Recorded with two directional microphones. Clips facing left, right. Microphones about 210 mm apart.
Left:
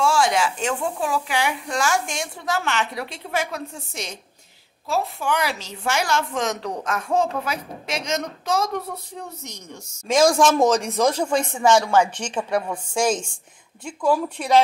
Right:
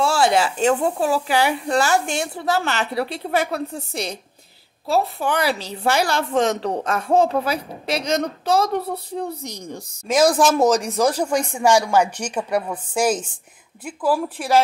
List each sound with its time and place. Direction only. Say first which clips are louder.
0.0 s a woman's voice: right 2 dB; 35° right (ahead or behind)
10.0 s a woman's voice: even; 5° right (ahead or behind)